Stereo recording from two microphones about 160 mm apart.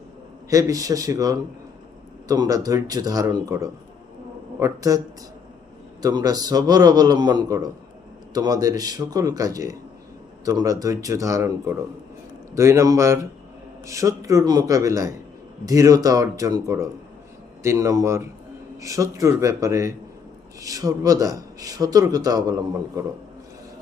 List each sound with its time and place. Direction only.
0.5 s speech: 20° right (ahead or behind)
6.0 s speech: 25° right (ahead or behind)